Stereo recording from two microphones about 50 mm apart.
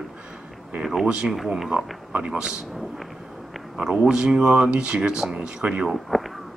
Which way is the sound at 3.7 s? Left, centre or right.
Centre.